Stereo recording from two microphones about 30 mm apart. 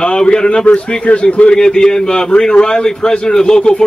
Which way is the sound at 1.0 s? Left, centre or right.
Left.